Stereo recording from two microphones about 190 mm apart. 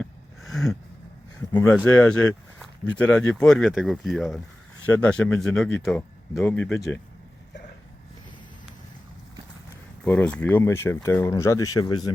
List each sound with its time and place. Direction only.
0.0 s a sound: centre (ahead or behind)
1.8 s speech: 5° left (ahead or behind)
10.0 s speech: 5° left (ahead or behind)